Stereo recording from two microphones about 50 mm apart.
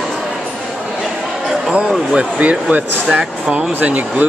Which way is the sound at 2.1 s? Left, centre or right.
Right.